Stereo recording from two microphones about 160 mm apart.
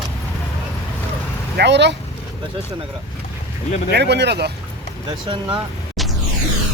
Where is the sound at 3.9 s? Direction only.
90° right.